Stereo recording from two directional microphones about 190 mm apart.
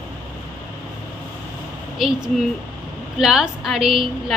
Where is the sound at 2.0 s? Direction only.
Centre (ahead or behind).